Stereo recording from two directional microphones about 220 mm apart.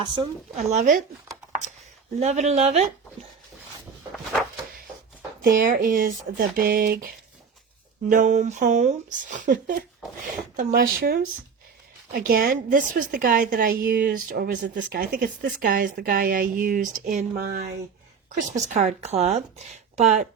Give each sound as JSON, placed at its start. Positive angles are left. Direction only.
{"t": 0.0, "sound": "speech", "side_deg": -20}
{"t": 0.7, "sound": "a woman's voice", "side_deg": -35}
{"t": 2.1, "sound": "speech", "side_deg": -30}
{"t": 5.4, "sound": "a woman's voice", "side_deg": -40}
{"t": 8.1, "sound": "a woman's voice", "side_deg": -35}
{"t": 18.6, "sound": "a woman's voice", "side_deg": -35}